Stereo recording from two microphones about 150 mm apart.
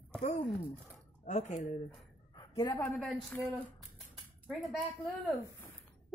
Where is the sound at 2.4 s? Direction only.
30° left (ahead or behind).